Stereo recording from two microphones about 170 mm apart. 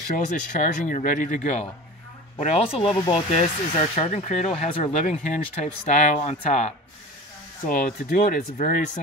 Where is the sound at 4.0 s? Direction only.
40° left (ahead or behind).